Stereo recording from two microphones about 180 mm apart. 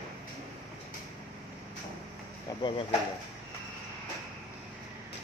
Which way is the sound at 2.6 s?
30° left (ahead or behind).